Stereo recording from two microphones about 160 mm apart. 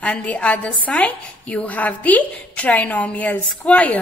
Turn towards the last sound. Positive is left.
turn(degrees=10)  # may be behind; listen again after turning